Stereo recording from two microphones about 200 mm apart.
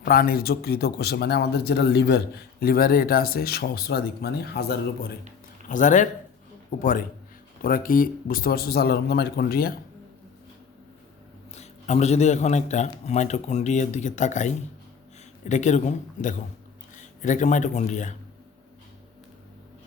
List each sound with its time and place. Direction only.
0.0 s speech: 50° left (ahead or behind)
5.6 s speech: 40° left (ahead or behind)
11.5 s a man's voice: 35° left (ahead or behind)